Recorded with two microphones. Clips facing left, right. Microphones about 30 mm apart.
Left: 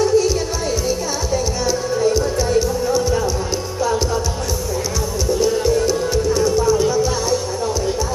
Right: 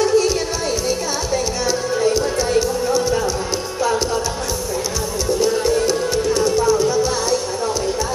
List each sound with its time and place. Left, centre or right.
0.0 s music: right
5.4 s music: centre